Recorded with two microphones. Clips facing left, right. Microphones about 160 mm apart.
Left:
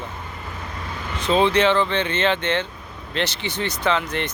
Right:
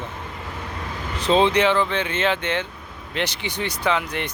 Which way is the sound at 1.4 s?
10° right (ahead or behind).